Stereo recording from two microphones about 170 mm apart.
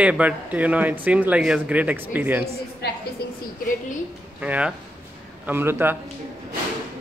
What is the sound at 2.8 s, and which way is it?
Speech, 75° left (ahead or behind).